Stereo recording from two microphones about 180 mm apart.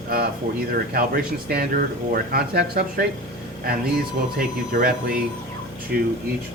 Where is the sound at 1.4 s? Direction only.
55° right (ahead or behind).